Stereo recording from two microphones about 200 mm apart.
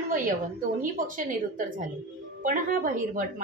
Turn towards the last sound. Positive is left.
turn(degrees=-40)  # may be behind; listen again after turning